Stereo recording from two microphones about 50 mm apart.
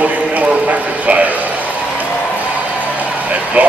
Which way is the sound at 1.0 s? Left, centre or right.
Right.